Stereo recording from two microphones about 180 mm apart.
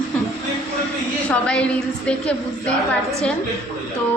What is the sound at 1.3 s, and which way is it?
A woman's voice, 5° left (ahead or behind).